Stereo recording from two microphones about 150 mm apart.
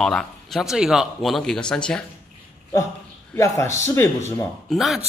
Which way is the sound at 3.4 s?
20° left (ahead or behind).